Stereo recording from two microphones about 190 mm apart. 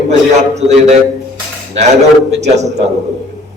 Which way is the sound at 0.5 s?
35° right (ahead or behind).